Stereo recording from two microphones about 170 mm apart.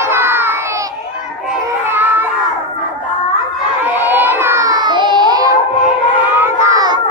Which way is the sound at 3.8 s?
10° right (ahead or behind).